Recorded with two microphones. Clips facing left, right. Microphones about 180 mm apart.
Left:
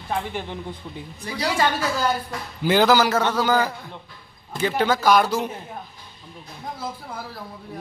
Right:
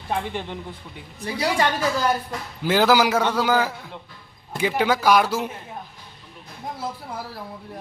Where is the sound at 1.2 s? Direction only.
25° right (ahead or behind).